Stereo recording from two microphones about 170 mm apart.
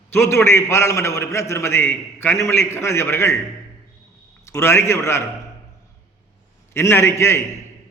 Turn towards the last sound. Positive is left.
turn(degrees=15)  # may be behind; listen again after turning